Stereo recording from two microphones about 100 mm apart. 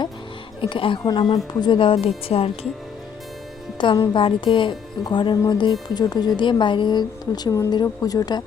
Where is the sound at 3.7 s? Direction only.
50° left (ahead or behind).